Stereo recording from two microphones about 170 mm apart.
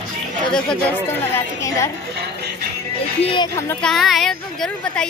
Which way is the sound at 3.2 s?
30° left (ahead or behind).